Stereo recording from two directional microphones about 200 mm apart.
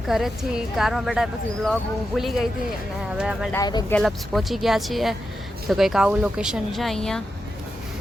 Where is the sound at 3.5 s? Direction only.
20° left (ahead or behind).